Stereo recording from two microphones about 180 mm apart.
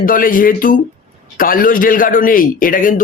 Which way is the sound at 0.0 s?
50° left (ahead or behind).